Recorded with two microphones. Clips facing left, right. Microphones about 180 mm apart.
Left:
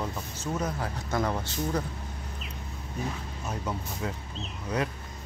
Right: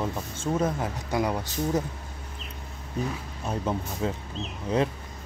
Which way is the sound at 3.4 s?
25° right (ahead or behind).